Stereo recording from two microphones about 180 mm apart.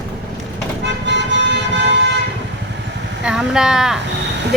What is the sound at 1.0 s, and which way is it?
Vehicle, 80° right.